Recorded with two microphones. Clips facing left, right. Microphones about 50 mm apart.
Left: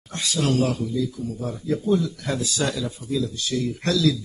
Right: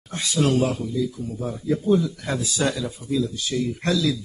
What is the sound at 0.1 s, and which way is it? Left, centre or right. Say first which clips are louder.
Speech: right 2 dB; centre.